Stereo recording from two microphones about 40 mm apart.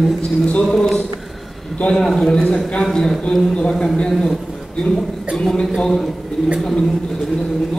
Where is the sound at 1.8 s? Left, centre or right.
Centre.